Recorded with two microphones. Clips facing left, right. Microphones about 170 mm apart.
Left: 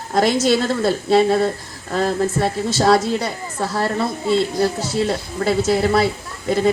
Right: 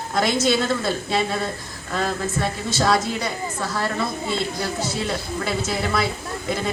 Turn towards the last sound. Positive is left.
turn(degrees=35)  # may be behind; listen again after turning